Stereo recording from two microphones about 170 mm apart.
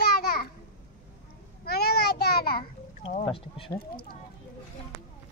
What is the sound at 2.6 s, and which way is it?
A child's voice, 35° left (ahead or behind).